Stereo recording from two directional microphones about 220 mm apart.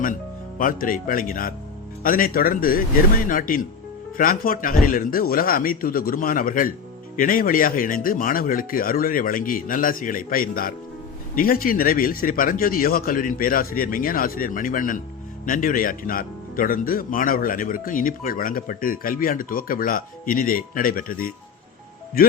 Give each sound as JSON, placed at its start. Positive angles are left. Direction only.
{"t": 0.6, "sound": "speech", "side_deg": 40}